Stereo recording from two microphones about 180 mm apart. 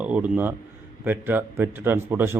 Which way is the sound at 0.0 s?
5° right (ahead or behind).